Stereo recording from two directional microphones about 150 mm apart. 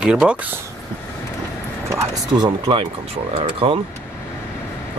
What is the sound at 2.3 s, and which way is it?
Speech, 30° right (ahead or behind).